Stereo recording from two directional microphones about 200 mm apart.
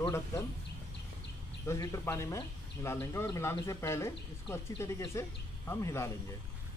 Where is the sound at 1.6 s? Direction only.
15° left (ahead or behind).